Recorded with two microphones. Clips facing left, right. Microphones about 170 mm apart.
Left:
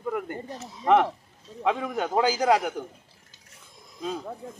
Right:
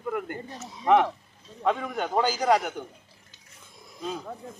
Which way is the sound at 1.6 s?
5° left (ahead or behind).